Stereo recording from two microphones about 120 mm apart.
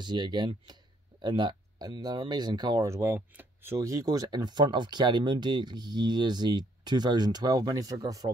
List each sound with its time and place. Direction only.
0.0 s speech: 40° right (ahead or behind); by 3.7 s 15° right (ahead or behind)
3.7 s speech: 30° right (ahead or behind)